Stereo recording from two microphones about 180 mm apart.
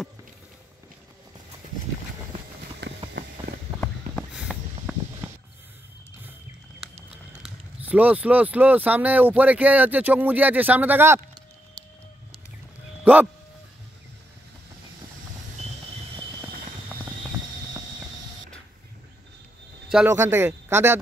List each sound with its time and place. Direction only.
2.8 s vehicle: 65° right (ahead or behind)
4.5 s a sound: 5° right (ahead or behind)
7.4 s speech: 10° right (ahead or behind)
13.0 s speech: 10° right (ahead or behind)
20.1 s speech: 15° right (ahead or behind)